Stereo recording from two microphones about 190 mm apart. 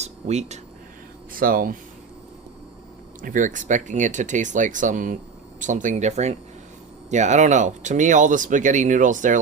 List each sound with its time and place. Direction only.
0.0 s speech: 35° right (ahead or behind)
1.3 s speech: 50° right (ahead or behind)
3.2 s speech: 45° right (ahead or behind)